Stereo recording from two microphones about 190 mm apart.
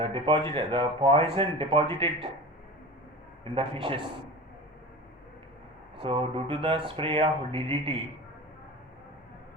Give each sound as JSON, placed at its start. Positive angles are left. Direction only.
{"t": 0.0, "sound": "speech", "side_deg": -25}
{"t": 3.4, "sound": "speech", "side_deg": -30}
{"t": 6.0, "sound": "speech", "side_deg": -30}